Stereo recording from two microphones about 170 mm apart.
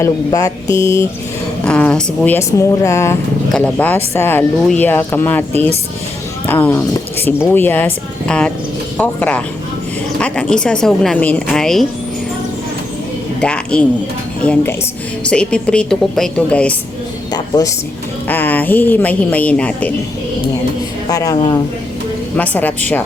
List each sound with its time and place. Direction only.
0.0 s a woman's voice: 20° left (ahead or behind)
1.6 s speech: 5° left (ahead or behind)
6.5 s speech: 10° left (ahead or behind)
13.4 s speech: 5° left (ahead or behind)
17.3 s a woman's voice: 20° left (ahead or behind)
18.3 s speech: 10° left (ahead or behind)
21.1 s a woman's voice: 20° left (ahead or behind)
22.4 s speech: 10° left (ahead or behind)